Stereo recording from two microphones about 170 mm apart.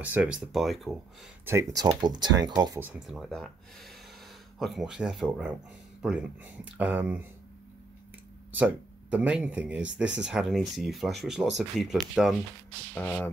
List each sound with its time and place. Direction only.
0.0 s speech: 10° right (ahead or behind)
1.4 s speech: 15° right (ahead or behind)
2.8 s speech: 5° right (ahead or behind)
8.5 s speech: 10° right (ahead or behind)
12.9 s speech: 10° left (ahead or behind)